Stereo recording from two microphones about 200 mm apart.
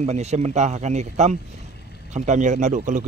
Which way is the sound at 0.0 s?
35° right (ahead or behind).